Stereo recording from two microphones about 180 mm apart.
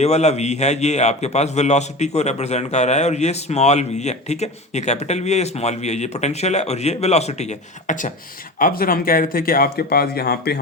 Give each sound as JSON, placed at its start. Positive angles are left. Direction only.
{"t": 0.0, "sound": "a man's voice", "side_deg": 40}
{"t": 8.5, "sound": "speech", "side_deg": 50}